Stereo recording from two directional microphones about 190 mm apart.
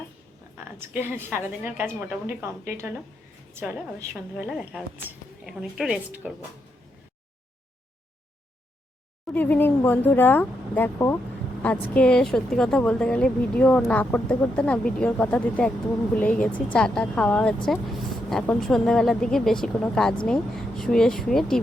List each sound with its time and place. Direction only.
0.8 s a woman's voice: 10° right (ahead or behind)
9.3 s speech: 10° left (ahead or behind)